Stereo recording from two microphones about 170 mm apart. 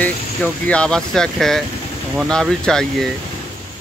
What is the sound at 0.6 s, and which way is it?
Speech, 5° left (ahead or behind).